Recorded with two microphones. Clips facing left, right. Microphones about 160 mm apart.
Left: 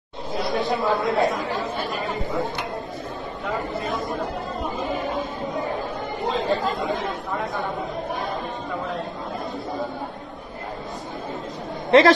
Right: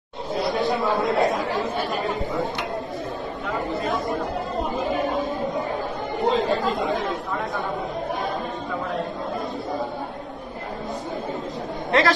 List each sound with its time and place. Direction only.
0.5 s speech: centre (ahead or behind)
3.5 s a sound: centre (ahead or behind)
6.1 s chatter: centre (ahead or behind)
6.9 s speech: centre (ahead or behind)
11.9 s a man's voice: 20° left (ahead or behind)